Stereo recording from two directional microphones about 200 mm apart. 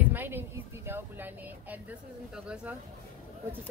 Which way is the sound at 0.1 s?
10° right (ahead or behind).